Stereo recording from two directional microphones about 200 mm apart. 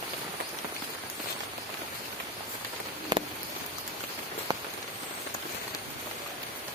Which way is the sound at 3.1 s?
20° right (ahead or behind).